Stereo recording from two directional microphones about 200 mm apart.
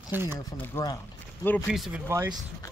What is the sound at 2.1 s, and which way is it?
Speech, 15° right (ahead or behind).